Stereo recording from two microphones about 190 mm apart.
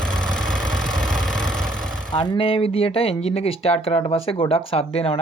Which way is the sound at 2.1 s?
20° left (ahead or behind).